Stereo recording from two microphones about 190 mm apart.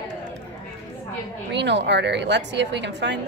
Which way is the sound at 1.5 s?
65° right (ahead or behind).